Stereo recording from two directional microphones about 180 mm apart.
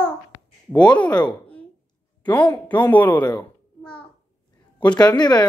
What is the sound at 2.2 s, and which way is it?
Speech, 10° left (ahead or behind).